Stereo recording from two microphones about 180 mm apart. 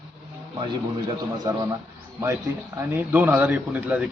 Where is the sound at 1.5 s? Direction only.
20° right (ahead or behind).